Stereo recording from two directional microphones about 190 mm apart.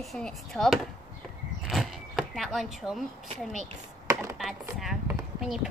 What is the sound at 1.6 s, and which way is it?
Zipper, centre (ahead or behind).